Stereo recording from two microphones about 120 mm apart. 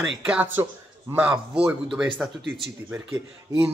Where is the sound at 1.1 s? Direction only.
25° right (ahead or behind).